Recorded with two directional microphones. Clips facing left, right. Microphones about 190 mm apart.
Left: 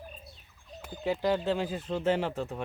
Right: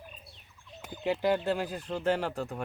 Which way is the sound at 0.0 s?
40° left (ahead or behind).